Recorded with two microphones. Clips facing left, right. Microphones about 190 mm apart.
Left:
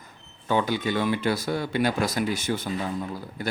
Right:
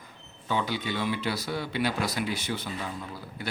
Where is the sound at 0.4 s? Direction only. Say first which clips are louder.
Left 5 dB; 50° left (ahead or behind).